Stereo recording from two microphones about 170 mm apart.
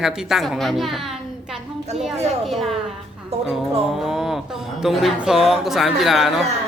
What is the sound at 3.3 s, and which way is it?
Music, 35° right (ahead or behind).